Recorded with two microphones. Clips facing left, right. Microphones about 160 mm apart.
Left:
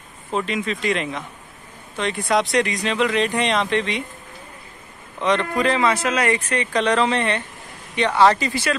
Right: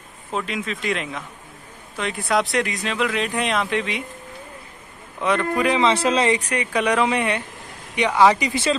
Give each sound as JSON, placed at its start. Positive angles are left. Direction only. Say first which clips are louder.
{"t": 0.3, "sound": "speech", "louder": "left 3 dB", "side_deg": 0}
{"t": 5.2, "sound": "speech", "louder": "left 1 dB", "side_deg": -10}
{"t": 5.8, "sound": "speech", "louder": "right 2 dB", "side_deg": -25}
{"t": 6.5, "sound": "speech", "louder": "left 1 dB", "side_deg": -10}